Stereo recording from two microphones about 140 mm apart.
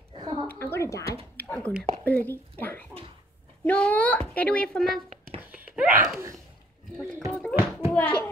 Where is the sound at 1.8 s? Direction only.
10° left (ahead or behind).